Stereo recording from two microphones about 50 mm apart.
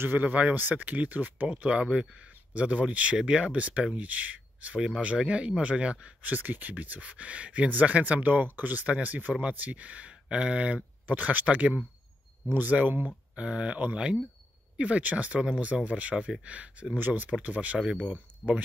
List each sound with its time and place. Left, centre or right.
0.0 s speech: right
0.3 s speech: right
0.6 s speech: right
4.7 s speech: centre
5.0 s speech: right
6.2 s speech: right
13.3 s speech: right
18.4 s speech: left